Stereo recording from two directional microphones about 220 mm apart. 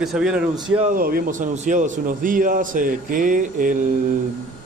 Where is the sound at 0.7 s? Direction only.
35° right (ahead or behind).